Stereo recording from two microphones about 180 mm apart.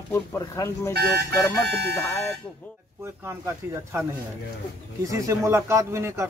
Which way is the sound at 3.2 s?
15° right (ahead or behind).